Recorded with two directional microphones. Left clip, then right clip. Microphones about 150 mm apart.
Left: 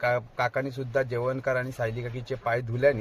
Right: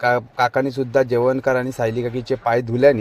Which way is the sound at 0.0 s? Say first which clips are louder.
Right 8 dB; 35° right (ahead or behind).